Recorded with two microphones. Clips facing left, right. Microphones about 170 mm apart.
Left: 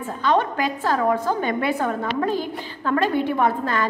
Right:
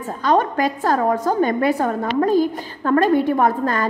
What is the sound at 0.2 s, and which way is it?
A woman's voice, 40° right (ahead or behind).